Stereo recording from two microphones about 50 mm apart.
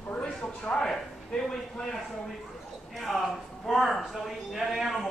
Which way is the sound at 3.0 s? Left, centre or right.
Centre.